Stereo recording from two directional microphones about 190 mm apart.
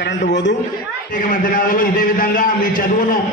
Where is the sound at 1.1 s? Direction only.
45° left (ahead or behind).